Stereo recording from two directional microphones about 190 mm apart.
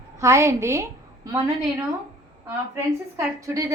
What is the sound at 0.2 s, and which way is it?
A woman's voice, 15° right (ahead or behind).